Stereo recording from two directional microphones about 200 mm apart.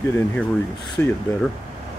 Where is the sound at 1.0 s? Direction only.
10° left (ahead or behind).